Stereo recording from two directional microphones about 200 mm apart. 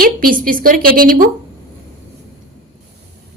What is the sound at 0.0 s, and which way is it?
A woman's voice, 45° right (ahead or behind).